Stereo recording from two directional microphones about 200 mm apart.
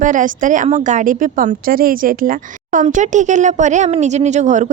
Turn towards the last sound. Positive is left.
turn(degrees=-35)  # may be behind; listen again after turning